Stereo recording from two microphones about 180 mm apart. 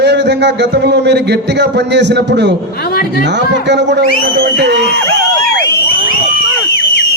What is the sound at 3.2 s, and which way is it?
A man's voice, 75° right (ahead or behind).